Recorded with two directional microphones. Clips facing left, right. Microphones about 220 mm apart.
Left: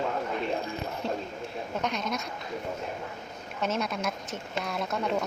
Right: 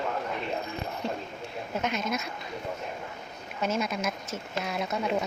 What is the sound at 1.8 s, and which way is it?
Speech, 5° right (ahead or behind).